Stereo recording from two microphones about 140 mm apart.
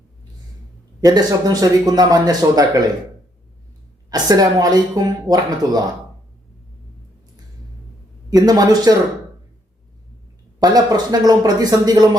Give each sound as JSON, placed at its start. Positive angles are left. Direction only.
{"t": 1.0, "sound": "speech", "side_deg": -25}
{"t": 4.1, "sound": "speech", "side_deg": -25}
{"t": 8.3, "sound": "speech", "side_deg": -25}
{"t": 10.6, "sound": "speech", "side_deg": -30}